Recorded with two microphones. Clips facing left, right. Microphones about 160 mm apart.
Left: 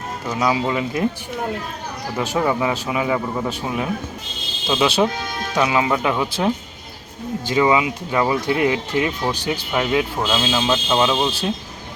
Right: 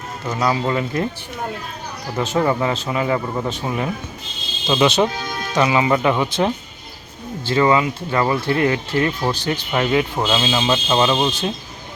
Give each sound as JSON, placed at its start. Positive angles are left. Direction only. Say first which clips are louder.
{"t": 0.3, "sound": "speech", "louder": "even", "side_deg": 5}
{"t": 2.1, "sound": "speech", "louder": "right 2 dB", "side_deg": 10}